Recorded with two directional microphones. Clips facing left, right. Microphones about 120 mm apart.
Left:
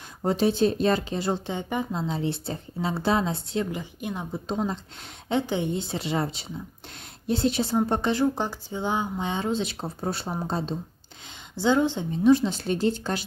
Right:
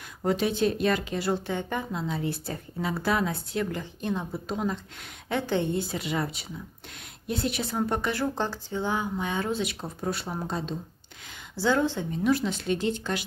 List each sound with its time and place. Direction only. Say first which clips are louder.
0.2 s speech: left 3 dB; 30° left (ahead or behind)
1.9 s speech: left 2 dB; 30° left (ahead or behind)
3.8 s speech: right 2 dB; 15° left (ahead or behind)
4.5 s speech: left 3 dB; 25° left (ahead or behind)
8.2 s speech: left 4 dB; 15° left (ahead or behind); by 10.8 s 35° left (ahead or behind)
11.5 s speech: left 2 dB; 20° left (ahead or behind); by 13.2 s 35° left (ahead or behind)